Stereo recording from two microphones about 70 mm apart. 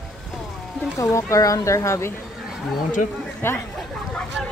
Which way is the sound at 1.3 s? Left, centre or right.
Left.